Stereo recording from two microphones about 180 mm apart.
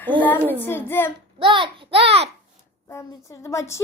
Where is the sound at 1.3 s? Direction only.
30° right (ahead or behind).